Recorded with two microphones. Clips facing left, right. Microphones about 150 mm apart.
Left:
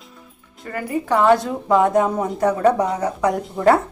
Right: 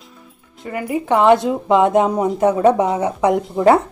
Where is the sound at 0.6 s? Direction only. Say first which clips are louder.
Right 2 dB; 20° right (ahead or behind).